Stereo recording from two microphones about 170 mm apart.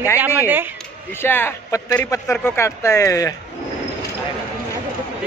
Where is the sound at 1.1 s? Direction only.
15° left (ahead or behind).